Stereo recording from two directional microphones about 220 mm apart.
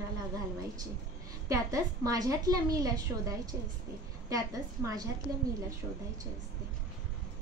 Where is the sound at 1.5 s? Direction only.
15° right (ahead or behind).